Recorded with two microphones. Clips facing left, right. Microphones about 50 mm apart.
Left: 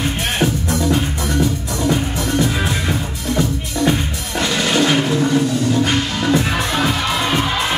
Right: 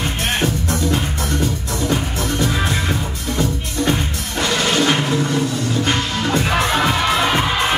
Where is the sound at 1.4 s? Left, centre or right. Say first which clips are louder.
Left 3 dB; centre.